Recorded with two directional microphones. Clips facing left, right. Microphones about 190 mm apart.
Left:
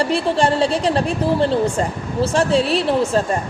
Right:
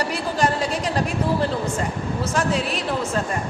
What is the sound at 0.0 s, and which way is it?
A woman's voice, 30° left (ahead or behind).